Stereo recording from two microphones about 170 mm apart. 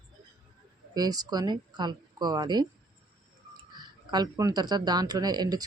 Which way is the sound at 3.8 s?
25° right (ahead or behind).